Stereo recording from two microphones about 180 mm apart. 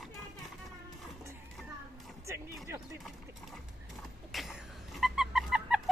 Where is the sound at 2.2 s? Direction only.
15° right (ahead or behind).